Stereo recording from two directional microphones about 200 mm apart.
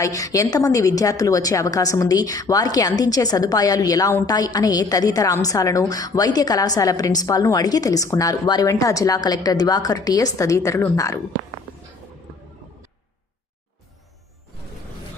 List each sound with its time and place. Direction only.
0.0 s a woman's voice: 15° left (ahead or behind)